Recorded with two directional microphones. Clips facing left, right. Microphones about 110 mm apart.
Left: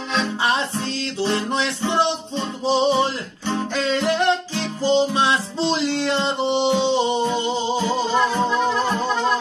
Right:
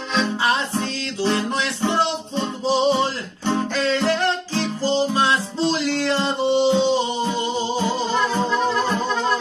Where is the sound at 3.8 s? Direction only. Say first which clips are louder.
Left 2 dB; 15° left (ahead or behind).